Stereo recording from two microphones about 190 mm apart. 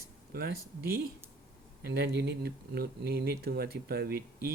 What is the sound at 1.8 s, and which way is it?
Speech, 60° right (ahead or behind).